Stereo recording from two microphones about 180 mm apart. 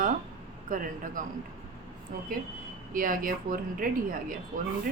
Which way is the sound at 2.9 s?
50° right (ahead or behind).